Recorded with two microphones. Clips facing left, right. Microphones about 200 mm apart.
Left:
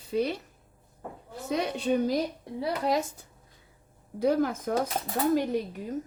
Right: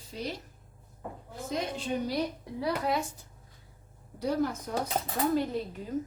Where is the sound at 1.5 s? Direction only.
70° left (ahead or behind).